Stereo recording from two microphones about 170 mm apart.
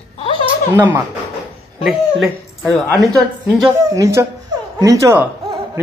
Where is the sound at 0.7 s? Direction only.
10° right (ahead or behind).